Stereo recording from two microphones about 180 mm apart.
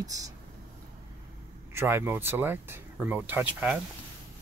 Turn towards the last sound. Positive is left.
turn(degrees=-10)  # may be behind; listen again after turning